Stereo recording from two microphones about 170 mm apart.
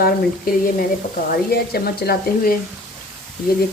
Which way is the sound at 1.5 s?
65° left (ahead or behind).